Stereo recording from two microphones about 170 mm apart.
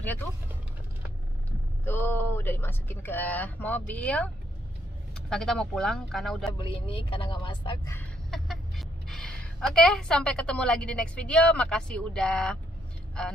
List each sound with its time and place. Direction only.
1.9 s speech: 10° left (ahead or behind)
6.6 s a woman's voice: 30° left (ahead or behind)
8.3 s a woman's voice: centre (ahead or behind)